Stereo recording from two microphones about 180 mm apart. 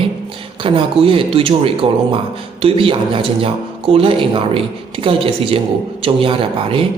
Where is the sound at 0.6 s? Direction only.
30° right (ahead or behind).